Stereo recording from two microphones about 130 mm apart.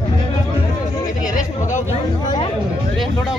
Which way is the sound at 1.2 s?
75° left (ahead or behind).